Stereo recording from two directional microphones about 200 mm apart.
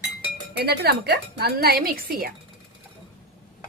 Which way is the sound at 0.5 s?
55° right (ahead or behind).